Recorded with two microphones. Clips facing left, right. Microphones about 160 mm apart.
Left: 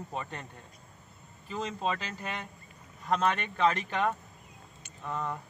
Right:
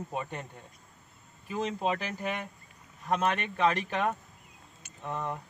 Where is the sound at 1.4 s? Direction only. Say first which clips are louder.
Right 2 dB; 15° right (ahead or behind).